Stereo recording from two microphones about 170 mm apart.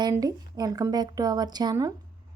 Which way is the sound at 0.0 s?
20° right (ahead or behind).